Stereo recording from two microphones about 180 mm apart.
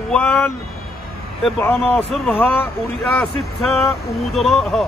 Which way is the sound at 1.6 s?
10° left (ahead or behind).